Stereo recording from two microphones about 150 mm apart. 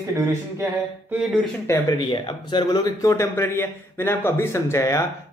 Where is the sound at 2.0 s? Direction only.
30° left (ahead or behind).